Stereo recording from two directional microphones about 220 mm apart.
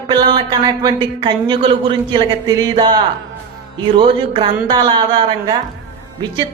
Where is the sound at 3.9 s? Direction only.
25° right (ahead or behind).